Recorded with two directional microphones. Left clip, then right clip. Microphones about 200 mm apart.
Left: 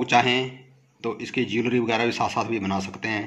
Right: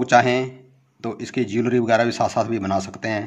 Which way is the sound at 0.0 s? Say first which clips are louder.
Right 4 dB; 55° right (ahead or behind).